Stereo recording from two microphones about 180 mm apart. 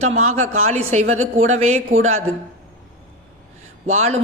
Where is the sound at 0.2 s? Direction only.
40° right (ahead or behind).